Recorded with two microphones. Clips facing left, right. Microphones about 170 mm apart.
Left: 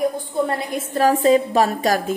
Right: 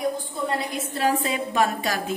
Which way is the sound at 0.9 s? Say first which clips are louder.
Left 10 dB; 45° left (ahead or behind).